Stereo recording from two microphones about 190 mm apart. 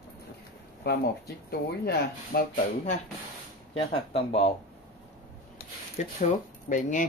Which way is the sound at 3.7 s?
30° left (ahead or behind).